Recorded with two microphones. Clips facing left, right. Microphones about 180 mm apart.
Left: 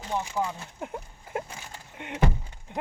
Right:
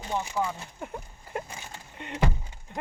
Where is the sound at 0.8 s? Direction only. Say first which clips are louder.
Left 4 dB; 10° left (ahead or behind).